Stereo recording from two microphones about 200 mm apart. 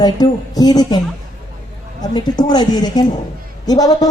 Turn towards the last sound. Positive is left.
turn(degrees=20)  # may be behind; listen again after turning